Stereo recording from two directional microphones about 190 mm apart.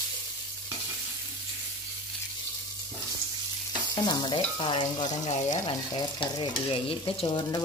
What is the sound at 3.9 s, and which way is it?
Stir, 20° left (ahead or behind).